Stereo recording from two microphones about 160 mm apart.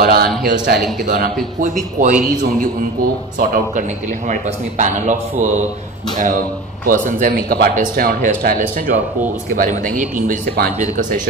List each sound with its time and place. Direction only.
0.0 s a man's voice: 70° right (ahead or behind)
1.0 s a man's voice: 60° right (ahead or behind)
3.3 s a man's voice: 55° right (ahead or behind)
6.1 s a man's voice: 50° right (ahead or behind); by 7.7 s 75° right (ahead or behind)
7.7 s speech: 60° right (ahead or behind)